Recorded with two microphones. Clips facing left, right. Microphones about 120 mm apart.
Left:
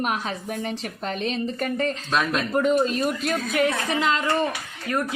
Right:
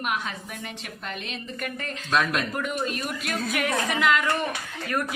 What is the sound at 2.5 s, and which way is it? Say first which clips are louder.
A woman's voice: left 8 dB; 30° left (ahead or behind).